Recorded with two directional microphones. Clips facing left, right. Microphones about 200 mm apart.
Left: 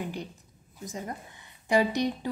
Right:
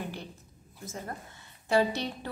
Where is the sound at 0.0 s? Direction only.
15° left (ahead or behind).